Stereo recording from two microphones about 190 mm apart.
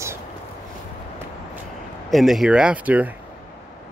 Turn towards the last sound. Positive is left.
turn(degrees=-10)  # may be behind; listen again after turning